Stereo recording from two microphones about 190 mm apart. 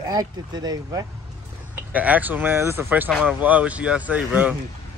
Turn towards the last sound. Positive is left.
turn(degrees=-10)  # may be behind; listen again after turning